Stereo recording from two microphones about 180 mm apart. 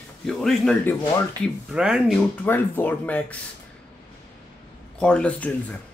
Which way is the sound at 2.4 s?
10° left (ahead or behind).